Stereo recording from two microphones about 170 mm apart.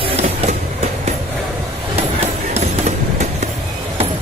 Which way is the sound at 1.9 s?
40° right (ahead or behind).